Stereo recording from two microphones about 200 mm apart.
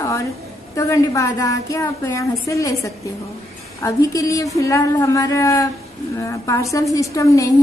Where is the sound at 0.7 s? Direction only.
15° left (ahead or behind).